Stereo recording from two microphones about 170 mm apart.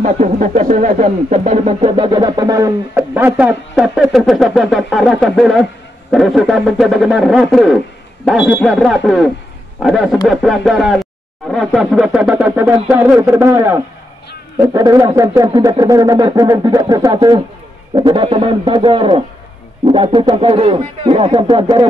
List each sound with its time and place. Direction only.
0.0 s a man's voice: 45° right (ahead or behind); by 21.8 s 25° right (ahead or behind)